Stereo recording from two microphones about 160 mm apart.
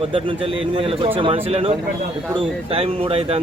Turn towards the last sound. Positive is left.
turn(degrees=-35)  # may be behind; listen again after turning